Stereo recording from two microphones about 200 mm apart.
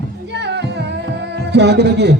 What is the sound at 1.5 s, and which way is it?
Speech, 55° right (ahead or behind).